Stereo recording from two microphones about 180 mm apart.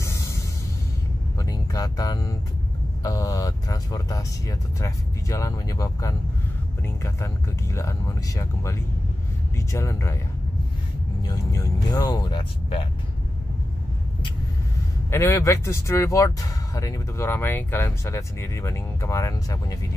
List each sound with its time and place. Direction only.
0.0 s a sound: 15° left (ahead or behind)
1.4 s speech: 20° left (ahead or behind)
11.2 s speech: 20° left (ahead or behind)
15.0 s speech: 15° left (ahead or behind)